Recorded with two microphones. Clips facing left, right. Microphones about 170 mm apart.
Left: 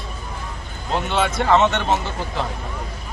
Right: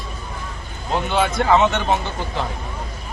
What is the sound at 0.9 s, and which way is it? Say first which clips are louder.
Speech: right 1 dB; centre (ahead or behind).